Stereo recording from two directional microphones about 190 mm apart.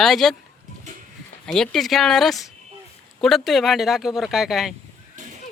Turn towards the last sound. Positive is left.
turn(degrees=0)  # may be behind; listen again after turning